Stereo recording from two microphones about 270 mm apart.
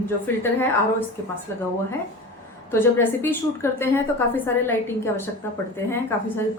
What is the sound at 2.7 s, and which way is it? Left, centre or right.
A woman's voice, centre.